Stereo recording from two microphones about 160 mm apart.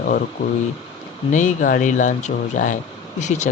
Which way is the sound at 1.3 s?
50° left (ahead or behind).